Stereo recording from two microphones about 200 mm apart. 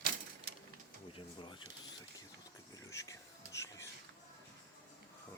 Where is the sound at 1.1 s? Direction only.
25° left (ahead or behind).